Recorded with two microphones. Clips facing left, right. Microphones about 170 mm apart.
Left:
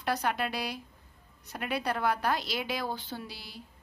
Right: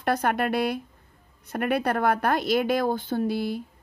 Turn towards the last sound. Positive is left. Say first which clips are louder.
# right 16 dB
turn(degrees=-55)  # may be behind; listen again after turning